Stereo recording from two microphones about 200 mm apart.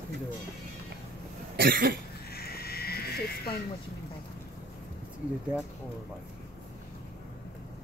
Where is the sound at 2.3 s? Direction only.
50° left (ahead or behind).